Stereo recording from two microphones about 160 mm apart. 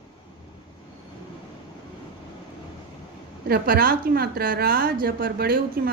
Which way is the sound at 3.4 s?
70° right (ahead or behind).